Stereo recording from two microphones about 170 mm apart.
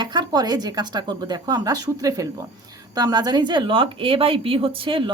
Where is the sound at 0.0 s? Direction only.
25° right (ahead or behind).